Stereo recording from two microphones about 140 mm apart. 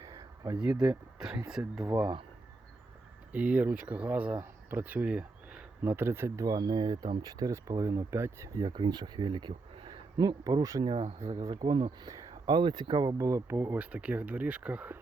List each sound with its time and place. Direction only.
0.0 s a sound: 25° right (ahead or behind)
0.5 s speech: 5° right (ahead or behind)
3.3 s speech: 10° right (ahead or behind)